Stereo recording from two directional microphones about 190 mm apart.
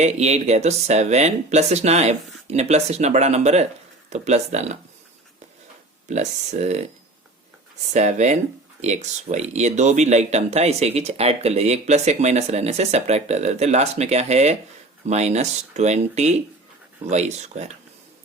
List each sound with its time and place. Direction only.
0.0 s speech: 35° right (ahead or behind)
6.1 s speech: 35° right (ahead or behind)
7.9 s speech: 40° right (ahead or behind)